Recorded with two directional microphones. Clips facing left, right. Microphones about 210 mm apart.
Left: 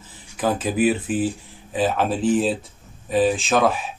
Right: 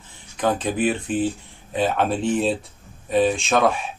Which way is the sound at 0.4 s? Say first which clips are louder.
Left 1 dB; 5° left (ahead or behind).